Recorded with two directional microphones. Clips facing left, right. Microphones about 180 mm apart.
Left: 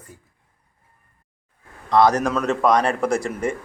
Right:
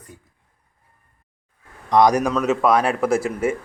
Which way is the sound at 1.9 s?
15° right (ahead or behind).